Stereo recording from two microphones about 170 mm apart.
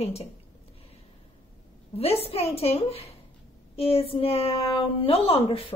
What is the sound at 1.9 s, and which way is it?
A woman's voice, 35° left (ahead or behind).